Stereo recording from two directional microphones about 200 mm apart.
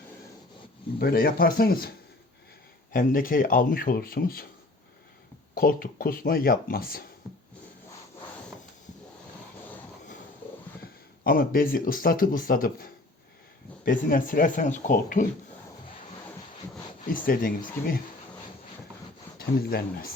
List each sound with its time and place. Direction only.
0.9 s speech: 50° left (ahead or behind)
2.9 s speech: 45° left (ahead or behind)
5.5 s speech: 45° left (ahead or behind)
11.2 s speech: 45° left (ahead or behind)
17.1 s speech: 45° left (ahead or behind)
19.4 s speech: 50° left (ahead or behind)